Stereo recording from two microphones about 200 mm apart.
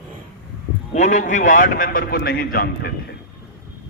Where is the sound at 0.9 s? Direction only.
35° left (ahead or behind); by 2.9 s 50° left (ahead or behind).